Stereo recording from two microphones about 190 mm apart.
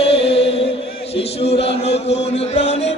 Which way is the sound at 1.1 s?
30° left (ahead or behind).